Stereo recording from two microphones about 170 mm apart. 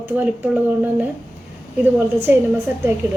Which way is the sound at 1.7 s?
10° right (ahead or behind).